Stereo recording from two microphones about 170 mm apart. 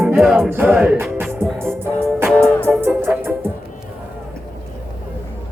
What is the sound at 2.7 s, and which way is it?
Music, 10° right (ahead or behind).